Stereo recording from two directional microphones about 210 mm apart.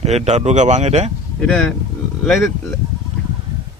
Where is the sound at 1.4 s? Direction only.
Centre (ahead or behind).